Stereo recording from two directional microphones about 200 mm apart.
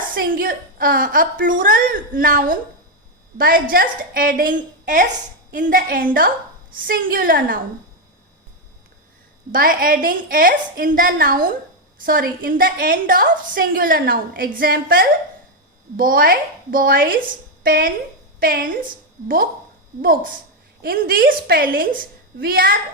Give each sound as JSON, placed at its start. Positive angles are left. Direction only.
{"t": 0.1, "sound": "a woman's voice", "side_deg": -45}
{"t": 9.5, "sound": "a woman's voice", "side_deg": -45}
{"t": 20.0, "sound": "a woman's voice", "side_deg": -45}